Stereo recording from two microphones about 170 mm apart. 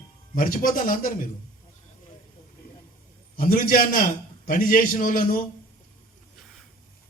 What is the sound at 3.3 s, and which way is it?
A man's voice, 55° left (ahead or behind).